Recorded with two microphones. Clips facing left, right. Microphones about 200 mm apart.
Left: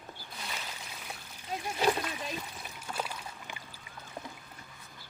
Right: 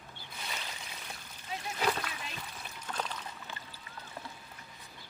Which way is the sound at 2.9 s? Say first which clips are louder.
Left 1 dB; 10° left (ahead or behind).